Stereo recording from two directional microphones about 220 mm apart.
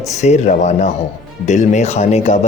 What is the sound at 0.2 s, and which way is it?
A man's voice, 30° left (ahead or behind).